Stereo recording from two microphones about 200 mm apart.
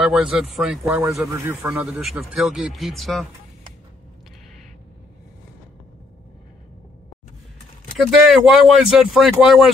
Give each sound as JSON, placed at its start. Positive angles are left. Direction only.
{"t": 0.0, "sound": "a man's voice", "side_deg": -5}
{"t": 8.0, "sound": "a man's voice", "side_deg": 0}